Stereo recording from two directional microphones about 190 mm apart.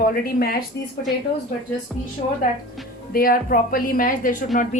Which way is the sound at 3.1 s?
50° left (ahead or behind).